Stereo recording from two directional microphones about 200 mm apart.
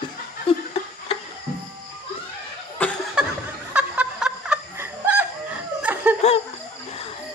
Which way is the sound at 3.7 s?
5° right (ahead or behind).